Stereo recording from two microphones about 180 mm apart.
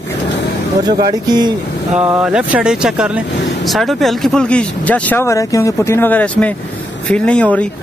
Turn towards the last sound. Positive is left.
turn(degrees=5)  # may be behind; listen again after turning